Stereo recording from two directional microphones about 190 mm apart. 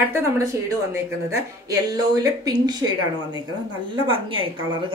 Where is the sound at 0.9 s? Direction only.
15° right (ahead or behind).